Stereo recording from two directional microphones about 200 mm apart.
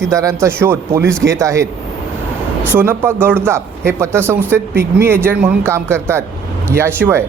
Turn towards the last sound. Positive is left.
turn(degrees=-10)  # may be behind; listen again after turning